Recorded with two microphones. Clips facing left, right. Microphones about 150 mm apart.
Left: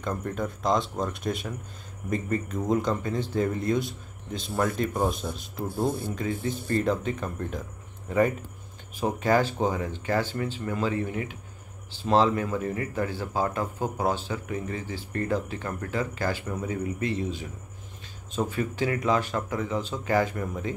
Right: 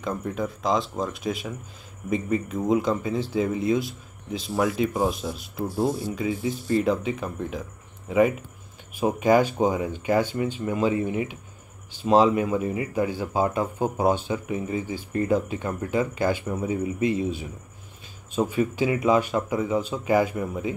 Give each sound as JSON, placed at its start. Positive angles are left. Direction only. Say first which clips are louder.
{"t": 0.0, "sound": "speech", "louder": "right 2 dB", "side_deg": -5}
{"t": 6.7, "sound": "speech", "louder": "right 3 dB", "side_deg": -5}